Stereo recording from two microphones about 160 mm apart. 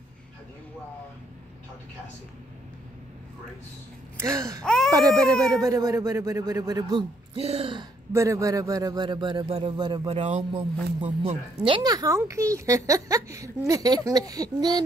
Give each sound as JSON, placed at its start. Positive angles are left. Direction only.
{"t": 4.2, "sound": "a child's voice", "side_deg": -20}
{"t": 4.6, "sound": "speech", "side_deg": 0}
{"t": 5.7, "sound": "a child's voice", "side_deg": -20}
{"t": 7.3, "sound": "speech", "side_deg": -40}
{"t": 8.1, "sound": "a child's voice", "side_deg": -20}
{"t": 11.6, "sound": "a child's voice", "side_deg": -25}